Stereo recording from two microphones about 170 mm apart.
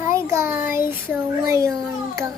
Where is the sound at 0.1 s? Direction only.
15° right (ahead or behind).